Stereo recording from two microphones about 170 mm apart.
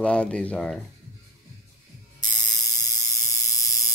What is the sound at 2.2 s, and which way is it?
Ratchet, 25° left (ahead or behind).